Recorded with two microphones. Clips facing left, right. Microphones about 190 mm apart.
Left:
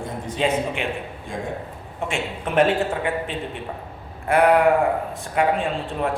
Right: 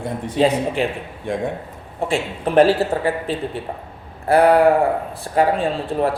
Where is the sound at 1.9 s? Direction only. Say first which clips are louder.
Right 5 dB; 35° right (ahead or behind).